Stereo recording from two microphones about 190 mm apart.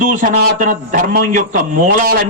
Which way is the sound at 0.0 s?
45° right (ahead or behind).